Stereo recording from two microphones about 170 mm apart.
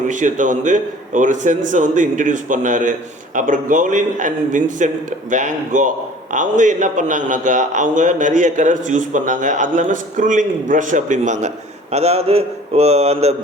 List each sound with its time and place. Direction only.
0.1 s a man's voice: 50° right (ahead or behind)